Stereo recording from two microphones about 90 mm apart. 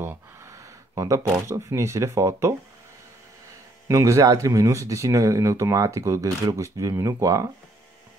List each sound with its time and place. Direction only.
0.0 s speech: 30° right (ahead or behind)
3.8 s speech: 35° right (ahead or behind)